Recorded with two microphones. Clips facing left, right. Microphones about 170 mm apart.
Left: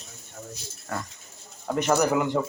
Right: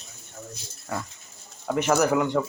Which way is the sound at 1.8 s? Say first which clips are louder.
Right 1 dB; centre (ahead or behind).